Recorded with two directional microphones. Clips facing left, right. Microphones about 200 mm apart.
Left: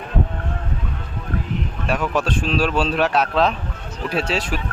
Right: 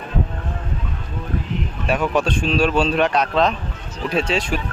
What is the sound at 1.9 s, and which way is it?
Speech, centre (ahead or behind).